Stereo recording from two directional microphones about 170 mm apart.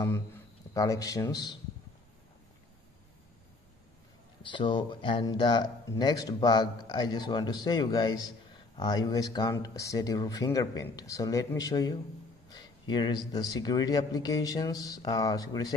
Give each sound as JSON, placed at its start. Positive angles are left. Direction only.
{"t": 0.0, "sound": "speech", "side_deg": 15}
{"t": 4.4, "sound": "speech", "side_deg": 30}